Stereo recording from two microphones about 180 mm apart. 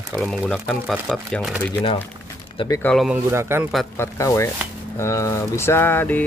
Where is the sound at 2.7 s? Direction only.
10° left (ahead or behind).